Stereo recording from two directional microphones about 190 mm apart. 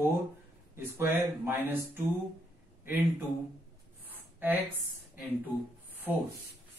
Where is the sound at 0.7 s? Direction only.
10° right (ahead or behind).